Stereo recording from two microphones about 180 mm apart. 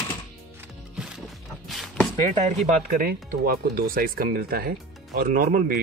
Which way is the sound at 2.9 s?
55° right (ahead or behind).